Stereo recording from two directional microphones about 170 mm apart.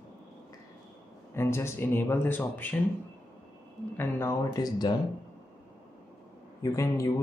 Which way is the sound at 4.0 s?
15° left (ahead or behind).